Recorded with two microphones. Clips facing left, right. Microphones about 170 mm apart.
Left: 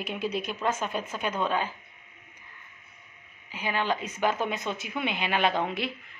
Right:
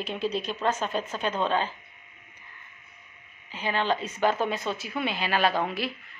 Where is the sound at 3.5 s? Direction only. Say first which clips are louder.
Right 2 dB; 10° left (ahead or behind).